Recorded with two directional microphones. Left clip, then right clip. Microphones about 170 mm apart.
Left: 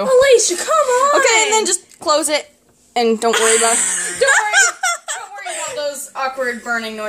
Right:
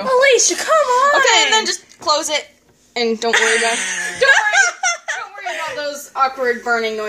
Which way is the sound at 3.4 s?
90° left.